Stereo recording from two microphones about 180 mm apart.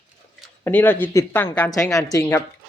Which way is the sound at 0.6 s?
10° left (ahead or behind).